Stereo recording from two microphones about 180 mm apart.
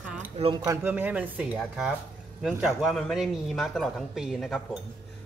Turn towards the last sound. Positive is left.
turn(degrees=0)  # may be behind; listen again after turning